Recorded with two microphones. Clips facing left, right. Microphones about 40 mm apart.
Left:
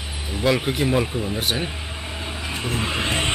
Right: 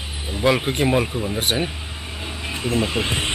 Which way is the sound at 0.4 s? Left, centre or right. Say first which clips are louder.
Right 2 dB; centre.